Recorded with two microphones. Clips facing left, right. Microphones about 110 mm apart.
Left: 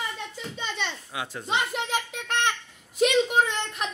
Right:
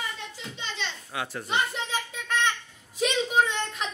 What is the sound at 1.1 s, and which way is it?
Speech, 15° left (ahead or behind).